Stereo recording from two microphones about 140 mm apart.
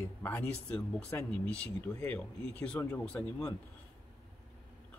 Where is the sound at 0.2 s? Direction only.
20° left (ahead or behind).